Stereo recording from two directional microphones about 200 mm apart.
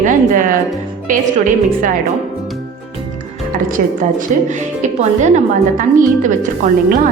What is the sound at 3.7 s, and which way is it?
A woman's voice, 40° right (ahead or behind).